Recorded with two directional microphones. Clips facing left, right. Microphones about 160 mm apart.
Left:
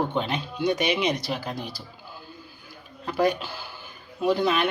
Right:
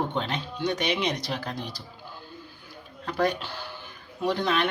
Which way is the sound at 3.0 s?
5° left (ahead or behind).